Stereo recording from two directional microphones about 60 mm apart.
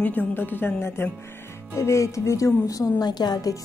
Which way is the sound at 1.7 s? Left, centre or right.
Left.